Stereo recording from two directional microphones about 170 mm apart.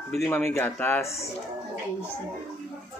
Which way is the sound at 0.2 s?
15° left (ahead or behind).